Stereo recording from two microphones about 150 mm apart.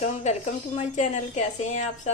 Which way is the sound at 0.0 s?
50° left (ahead or behind).